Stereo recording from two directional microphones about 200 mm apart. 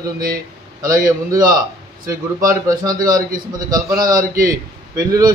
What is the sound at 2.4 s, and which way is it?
Speech, 20° right (ahead or behind).